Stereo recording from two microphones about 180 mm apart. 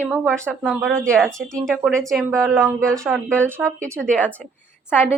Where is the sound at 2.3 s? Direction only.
15° right (ahead or behind).